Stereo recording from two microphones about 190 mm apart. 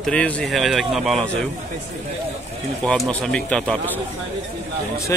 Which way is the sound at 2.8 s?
5° left (ahead or behind).